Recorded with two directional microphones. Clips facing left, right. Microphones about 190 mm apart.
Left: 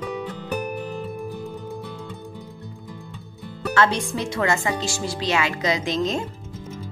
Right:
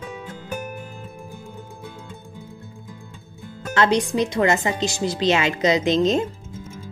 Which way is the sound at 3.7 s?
20° right (ahead or behind).